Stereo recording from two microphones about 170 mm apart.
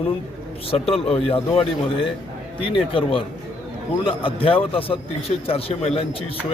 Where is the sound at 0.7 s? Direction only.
35° left (ahead or behind).